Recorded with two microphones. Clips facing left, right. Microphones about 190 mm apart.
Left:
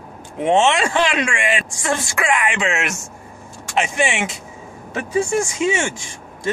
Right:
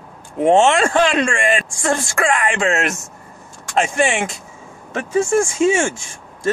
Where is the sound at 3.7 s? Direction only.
5° left (ahead or behind).